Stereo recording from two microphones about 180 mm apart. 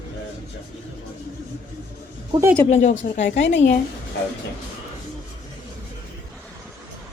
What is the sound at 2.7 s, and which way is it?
Speech, 40° left (ahead or behind).